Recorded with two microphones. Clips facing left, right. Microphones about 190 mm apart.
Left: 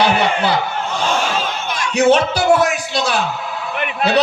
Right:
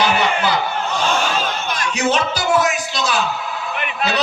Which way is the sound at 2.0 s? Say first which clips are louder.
Left 7 dB; 60° left (ahead or behind).